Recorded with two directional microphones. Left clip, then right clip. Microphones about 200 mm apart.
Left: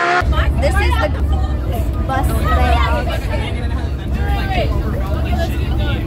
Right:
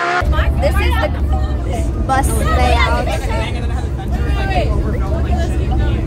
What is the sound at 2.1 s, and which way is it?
Speech, 15° right (ahead or behind).